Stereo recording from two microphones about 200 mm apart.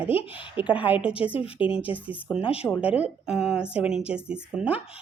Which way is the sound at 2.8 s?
5° right (ahead or behind).